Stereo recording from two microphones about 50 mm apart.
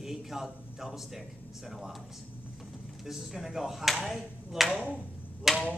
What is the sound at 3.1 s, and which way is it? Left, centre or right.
A woman's voice, centre.